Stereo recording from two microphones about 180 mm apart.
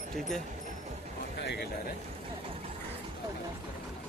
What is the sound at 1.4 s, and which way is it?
Speech, 65° left (ahead or behind).